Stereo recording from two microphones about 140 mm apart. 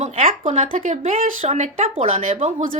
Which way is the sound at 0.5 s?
60° right (ahead or behind).